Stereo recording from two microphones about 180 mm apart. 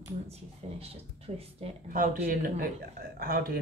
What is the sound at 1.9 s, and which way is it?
Speech, 50° right (ahead or behind).